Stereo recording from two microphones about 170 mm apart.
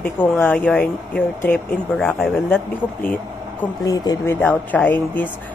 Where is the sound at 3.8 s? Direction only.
25° left (ahead or behind).